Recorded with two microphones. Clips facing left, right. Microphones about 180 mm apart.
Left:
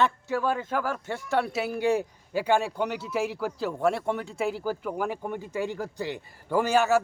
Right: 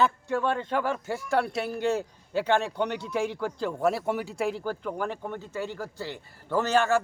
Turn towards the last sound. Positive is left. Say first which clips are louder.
# left 1 dB
turn(degrees=10)  # may be behind; listen again after turning